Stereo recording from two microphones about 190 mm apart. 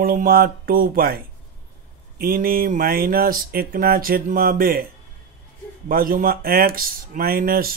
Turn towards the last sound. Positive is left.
turn(degrees=-50)  # may be behind; listen again after turning